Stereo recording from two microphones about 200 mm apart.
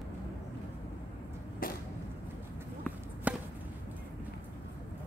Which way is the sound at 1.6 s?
45° left (ahead or behind).